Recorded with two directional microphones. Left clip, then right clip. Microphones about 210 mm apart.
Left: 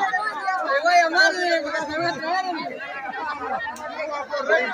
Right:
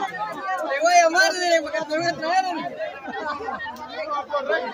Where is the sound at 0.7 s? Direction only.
55° right (ahead or behind).